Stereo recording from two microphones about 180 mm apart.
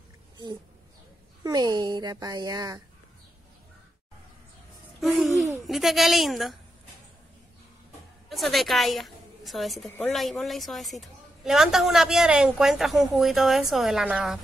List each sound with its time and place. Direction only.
1.4 s a woman's voice: 20° right (ahead or behind)
5.0 s a woman's voice: centre (ahead or behind)
8.3 s a woman's voice: centre (ahead or behind)